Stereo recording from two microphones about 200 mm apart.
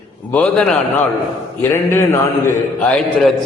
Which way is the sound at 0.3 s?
5° left (ahead or behind).